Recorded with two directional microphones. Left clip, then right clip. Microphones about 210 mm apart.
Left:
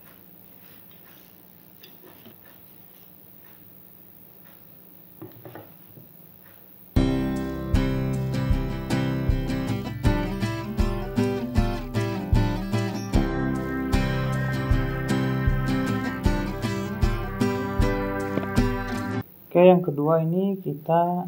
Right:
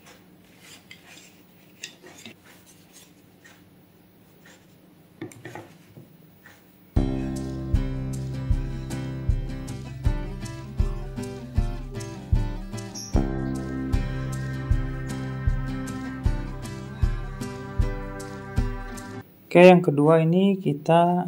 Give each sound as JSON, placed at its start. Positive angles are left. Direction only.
{"t": 6.9, "sound": "music", "side_deg": 0}
{"t": 19.5, "sound": "speech", "side_deg": -35}